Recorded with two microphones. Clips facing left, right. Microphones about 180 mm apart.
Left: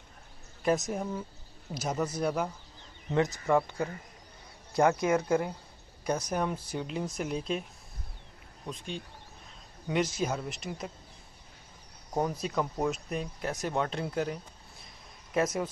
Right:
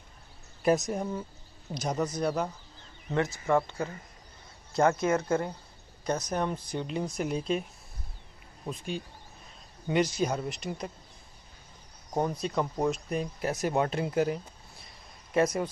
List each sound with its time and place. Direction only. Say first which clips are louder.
0.7 s speech: right 2 dB; centre (ahead or behind)
3.1 s speech: even; 20° left (ahead or behind)
4.7 s speech: even; 15° left (ahead or behind)
8.6 s speech: right 3 dB; 5° right (ahead or behind)
12.2 s speech: right 1 dB; 5° left (ahead or behind)